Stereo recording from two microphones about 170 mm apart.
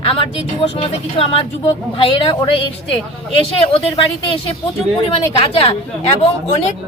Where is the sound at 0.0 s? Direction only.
35° left (ahead or behind).